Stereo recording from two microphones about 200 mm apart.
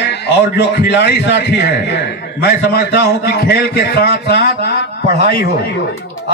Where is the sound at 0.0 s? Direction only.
55° left (ahead or behind).